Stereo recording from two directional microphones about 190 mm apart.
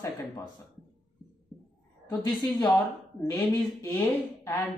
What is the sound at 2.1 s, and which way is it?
Speech, 20° left (ahead or behind).